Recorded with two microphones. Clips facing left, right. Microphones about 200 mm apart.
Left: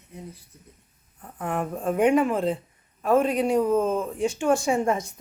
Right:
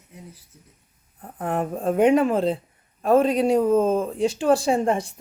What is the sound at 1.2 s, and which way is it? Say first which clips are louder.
Speech: right 3 dB; 40° right (ahead or behind).